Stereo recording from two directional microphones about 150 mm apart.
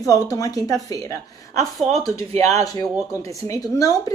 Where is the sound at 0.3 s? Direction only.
25° left (ahead or behind).